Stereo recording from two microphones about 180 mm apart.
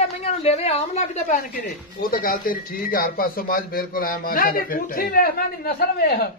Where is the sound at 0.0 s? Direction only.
35° left (ahead or behind); by 6.1 s 55° left (ahead or behind).